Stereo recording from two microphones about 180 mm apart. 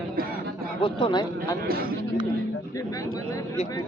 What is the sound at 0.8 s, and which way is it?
Speech, 30° left (ahead or behind).